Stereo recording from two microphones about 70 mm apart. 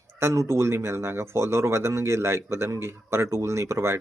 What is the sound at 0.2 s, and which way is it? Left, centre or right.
Speech, right.